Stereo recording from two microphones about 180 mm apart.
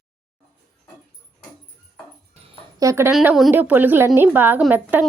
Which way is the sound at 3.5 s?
10° right (ahead or behind).